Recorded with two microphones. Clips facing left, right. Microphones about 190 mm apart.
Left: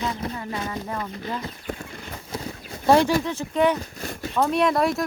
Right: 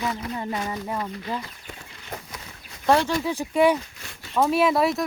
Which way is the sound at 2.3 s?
35° left (ahead or behind).